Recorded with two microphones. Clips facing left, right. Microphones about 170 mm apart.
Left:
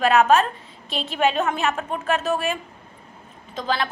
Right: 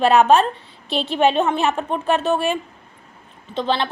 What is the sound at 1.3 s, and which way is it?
A woman's voice, 30° right (ahead or behind).